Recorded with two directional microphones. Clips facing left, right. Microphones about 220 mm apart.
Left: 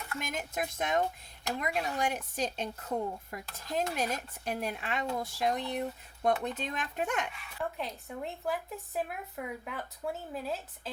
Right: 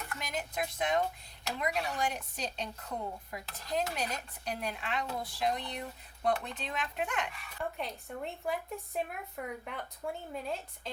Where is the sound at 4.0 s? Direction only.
50° left (ahead or behind).